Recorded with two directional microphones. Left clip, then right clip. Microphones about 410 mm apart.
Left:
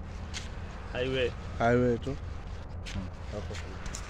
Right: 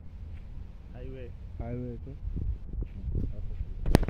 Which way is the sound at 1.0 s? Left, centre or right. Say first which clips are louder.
Left 16 dB; left.